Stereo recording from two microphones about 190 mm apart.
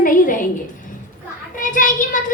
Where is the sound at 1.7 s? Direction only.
45° left (ahead or behind).